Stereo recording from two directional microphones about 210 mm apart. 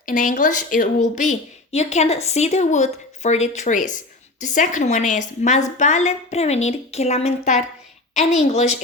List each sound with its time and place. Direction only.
0.0 s a woman's voice: 40° left (ahead or behind)